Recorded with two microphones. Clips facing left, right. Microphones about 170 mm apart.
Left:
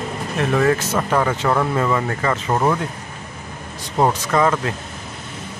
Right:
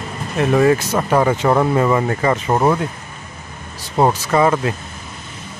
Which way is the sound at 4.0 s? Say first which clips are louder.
Right 2 dB; 10° right (ahead or behind).